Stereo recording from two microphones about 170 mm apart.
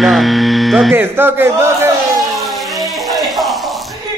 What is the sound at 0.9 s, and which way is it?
Speech, 10° right (ahead or behind).